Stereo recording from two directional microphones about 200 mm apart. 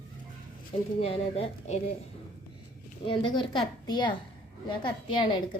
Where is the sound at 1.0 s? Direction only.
30° left (ahead or behind).